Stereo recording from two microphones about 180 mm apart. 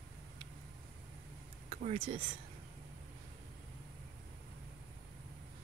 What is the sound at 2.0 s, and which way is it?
Speech, 30° right (ahead or behind).